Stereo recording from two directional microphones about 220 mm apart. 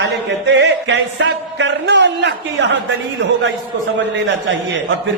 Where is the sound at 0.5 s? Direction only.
55° right (ahead or behind).